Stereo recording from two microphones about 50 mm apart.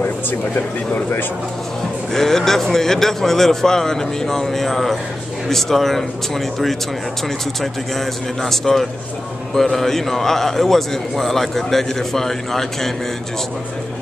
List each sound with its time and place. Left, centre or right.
0.0 s speech: left
2.1 s a man's voice: centre
8.4 s a man's voice: centre